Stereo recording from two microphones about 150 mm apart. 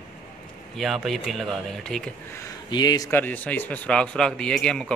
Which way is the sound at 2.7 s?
25° left (ahead or behind).